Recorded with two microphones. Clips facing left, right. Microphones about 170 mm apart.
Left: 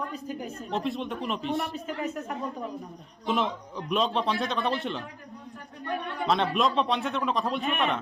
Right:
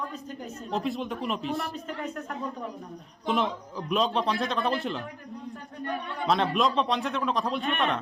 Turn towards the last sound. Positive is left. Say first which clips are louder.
# even
turn(degrees=0)  # may be behind; listen again after turning